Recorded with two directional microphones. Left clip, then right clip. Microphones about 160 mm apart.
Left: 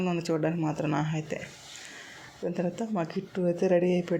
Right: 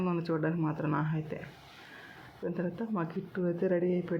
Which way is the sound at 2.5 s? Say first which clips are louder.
Left 5 dB; 15° left (ahead or behind).